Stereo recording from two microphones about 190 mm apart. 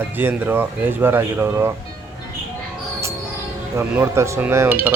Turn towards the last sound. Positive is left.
turn(degrees=-15)  # may be behind; listen again after turning